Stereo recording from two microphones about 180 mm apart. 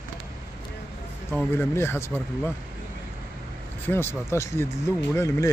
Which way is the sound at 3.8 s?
10° left (ahead or behind).